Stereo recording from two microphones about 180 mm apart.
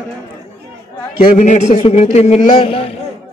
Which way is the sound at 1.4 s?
40° left (ahead or behind).